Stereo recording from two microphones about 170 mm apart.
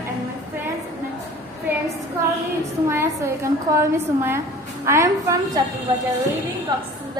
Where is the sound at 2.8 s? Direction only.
15° right (ahead or behind).